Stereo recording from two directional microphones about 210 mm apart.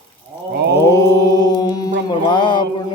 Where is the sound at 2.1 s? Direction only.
20° left (ahead or behind).